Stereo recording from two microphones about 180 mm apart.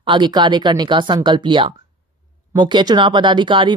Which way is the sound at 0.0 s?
25° right (ahead or behind).